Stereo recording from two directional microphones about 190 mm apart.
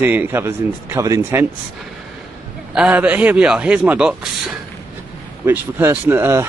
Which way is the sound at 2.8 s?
10° right (ahead or behind).